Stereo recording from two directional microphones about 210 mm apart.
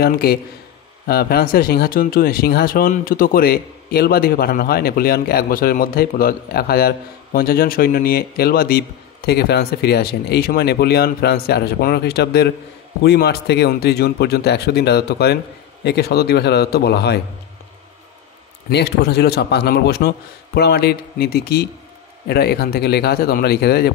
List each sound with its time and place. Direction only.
0.0 s speech: 45° left (ahead or behind)
18.7 s speech: 50° left (ahead or behind)